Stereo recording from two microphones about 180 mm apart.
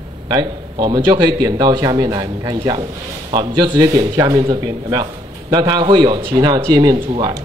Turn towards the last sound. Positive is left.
turn(degrees=-20)  # may be behind; listen again after turning